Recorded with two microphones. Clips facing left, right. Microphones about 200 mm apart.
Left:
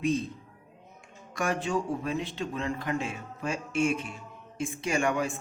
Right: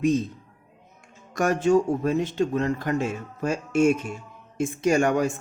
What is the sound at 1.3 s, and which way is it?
Speech, 45° right (ahead or behind).